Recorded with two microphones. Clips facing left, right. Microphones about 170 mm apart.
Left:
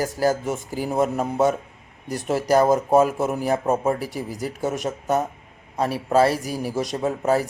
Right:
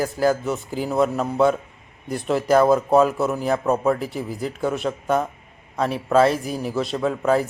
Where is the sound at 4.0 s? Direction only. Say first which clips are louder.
Right 1 dB; 10° left (ahead or behind).